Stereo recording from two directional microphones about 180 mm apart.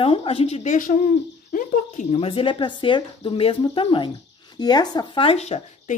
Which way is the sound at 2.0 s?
35° left (ahead or behind).